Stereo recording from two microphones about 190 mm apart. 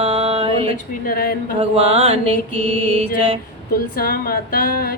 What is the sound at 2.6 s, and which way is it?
Music, 30° right (ahead or behind).